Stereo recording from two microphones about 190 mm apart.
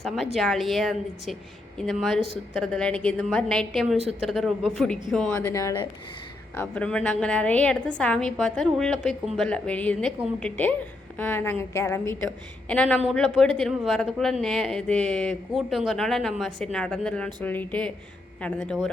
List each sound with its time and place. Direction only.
0.3 s speech: centre (ahead or behind)
5.5 s a woman's voice: 15° left (ahead or behind)